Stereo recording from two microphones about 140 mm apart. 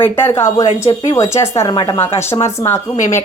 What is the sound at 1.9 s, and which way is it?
Speech, 15° left (ahead or behind).